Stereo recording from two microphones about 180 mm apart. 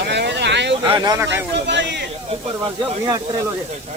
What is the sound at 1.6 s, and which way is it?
Speech, 80° right.